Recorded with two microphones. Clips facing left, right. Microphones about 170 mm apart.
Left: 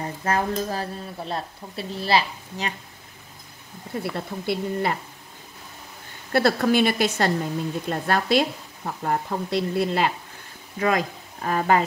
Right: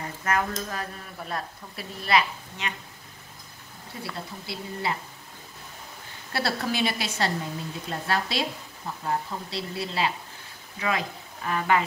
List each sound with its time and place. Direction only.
0.0 s a sound: 30° left (ahead or behind)
0.6 s speech: 35° left (ahead or behind)
4.0 s speech: 55° left (ahead or behind)
6.3 s speech: 50° left (ahead or behind)